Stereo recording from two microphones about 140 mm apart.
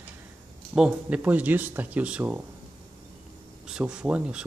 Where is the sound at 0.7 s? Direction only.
5° right (ahead or behind).